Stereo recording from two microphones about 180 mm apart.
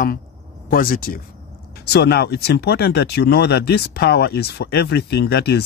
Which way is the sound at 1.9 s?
65° left (ahead or behind).